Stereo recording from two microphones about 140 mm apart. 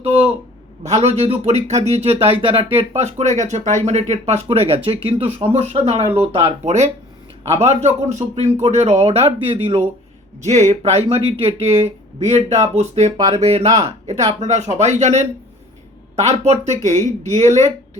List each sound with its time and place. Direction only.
0.0 s speech: 45° right (ahead or behind)
10.4 s speech: 60° right (ahead or behind)
16.2 s speech: 50° right (ahead or behind)